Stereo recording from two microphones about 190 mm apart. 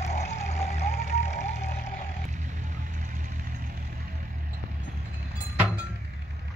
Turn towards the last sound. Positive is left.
turn(degrees=-5)  # may be behind; listen again after turning